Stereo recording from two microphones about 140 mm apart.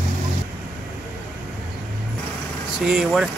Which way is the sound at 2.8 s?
5° right (ahead or behind).